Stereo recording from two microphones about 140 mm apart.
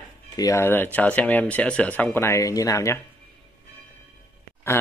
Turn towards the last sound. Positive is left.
turn(degrees=15)  # may be behind; listen again after turning